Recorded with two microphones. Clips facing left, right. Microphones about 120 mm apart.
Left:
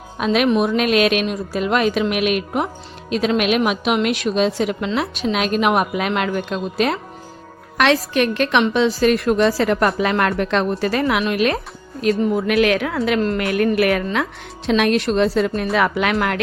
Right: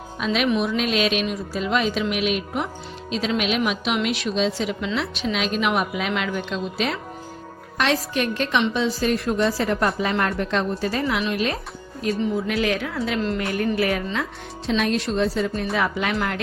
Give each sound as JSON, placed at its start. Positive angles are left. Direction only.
{"t": 0.3, "sound": "a woman's voice", "side_deg": 40}
{"t": 7.8, "sound": "a woman's voice", "side_deg": 75}